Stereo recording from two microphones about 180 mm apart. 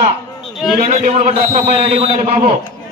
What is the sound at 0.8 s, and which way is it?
A man's voice, 40° right (ahead or behind).